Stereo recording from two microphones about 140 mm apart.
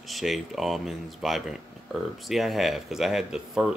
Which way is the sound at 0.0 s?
Centre (ahead or behind).